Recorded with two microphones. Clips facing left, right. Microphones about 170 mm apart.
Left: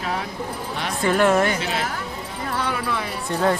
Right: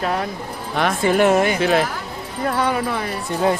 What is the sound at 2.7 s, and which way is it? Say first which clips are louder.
Speech: right 4 dB; 50° right (ahead or behind).